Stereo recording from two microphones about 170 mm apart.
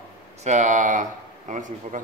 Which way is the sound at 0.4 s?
45° right (ahead or behind).